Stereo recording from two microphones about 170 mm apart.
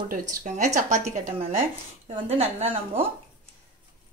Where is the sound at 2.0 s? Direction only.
35° right (ahead or behind).